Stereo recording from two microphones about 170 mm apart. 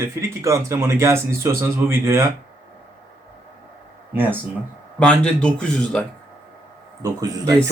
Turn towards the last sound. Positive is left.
turn(degrees=-20)  # may be behind; listen again after turning